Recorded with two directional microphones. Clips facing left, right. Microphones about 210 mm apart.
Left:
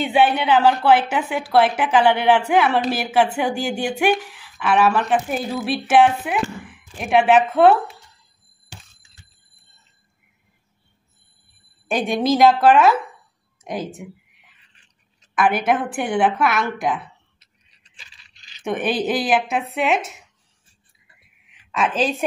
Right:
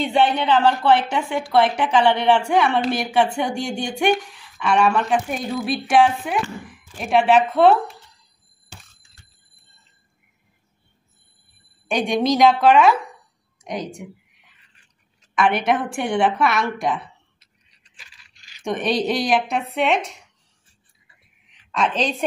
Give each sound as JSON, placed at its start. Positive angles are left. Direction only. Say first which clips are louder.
{"t": 0.0, "sound": "speech", "louder": "left 1 dB", "side_deg": 10}
{"t": 11.9, "sound": "speech", "louder": "even", "side_deg": 5}
{"t": 15.3, "sound": "speech", "louder": "even", "side_deg": 0}
{"t": 17.9, "sound": "scrape", "louder": "left 1 dB", "side_deg": 25}
{"t": 18.6, "sound": "speech", "louder": "even", "side_deg": 5}
{"t": 21.5, "sound": "a sound", "louder": "even", "side_deg": 5}